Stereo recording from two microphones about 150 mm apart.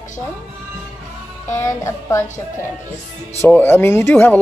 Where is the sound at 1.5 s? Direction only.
20° left (ahead or behind).